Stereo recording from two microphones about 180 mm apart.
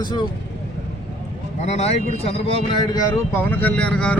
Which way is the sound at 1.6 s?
35° left (ahead or behind).